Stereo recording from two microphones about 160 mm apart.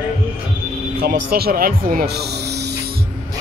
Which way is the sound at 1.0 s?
75° right (ahead or behind).